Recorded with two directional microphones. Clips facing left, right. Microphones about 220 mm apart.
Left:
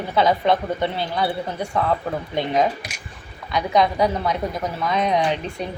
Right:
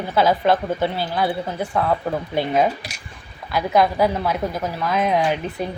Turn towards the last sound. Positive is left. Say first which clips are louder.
# right 1 dB
turn(degrees=-5)  # may be behind; listen again after turning